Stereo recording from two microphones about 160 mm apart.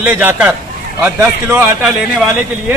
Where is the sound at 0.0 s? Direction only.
10° right (ahead or behind).